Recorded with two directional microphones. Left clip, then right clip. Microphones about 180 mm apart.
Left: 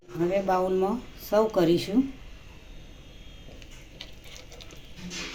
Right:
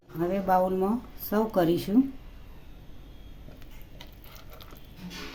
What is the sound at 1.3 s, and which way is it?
Speech, 60° right (ahead or behind).